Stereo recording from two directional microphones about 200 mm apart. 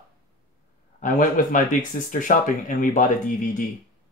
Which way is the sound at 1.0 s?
40° left (ahead or behind).